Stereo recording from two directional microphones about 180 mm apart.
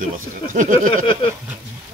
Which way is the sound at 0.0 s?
50° right (ahead or behind).